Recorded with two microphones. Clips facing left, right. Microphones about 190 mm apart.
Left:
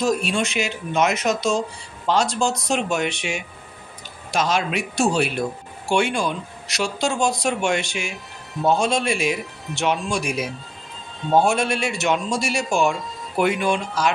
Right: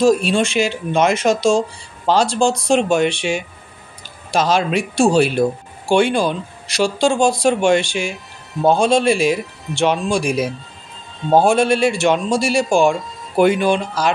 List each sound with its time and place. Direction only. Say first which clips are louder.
0.0 s speech: right 7 dB; 30° right (ahead or behind)